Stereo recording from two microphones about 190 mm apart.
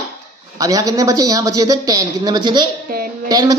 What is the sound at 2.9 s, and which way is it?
Music, 50° right (ahead or behind).